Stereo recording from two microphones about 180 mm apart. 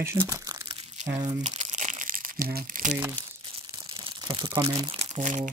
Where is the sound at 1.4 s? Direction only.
40° right (ahead or behind).